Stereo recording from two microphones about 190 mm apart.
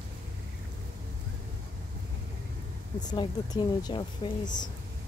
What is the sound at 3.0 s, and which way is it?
Speech, 25° left (ahead or behind).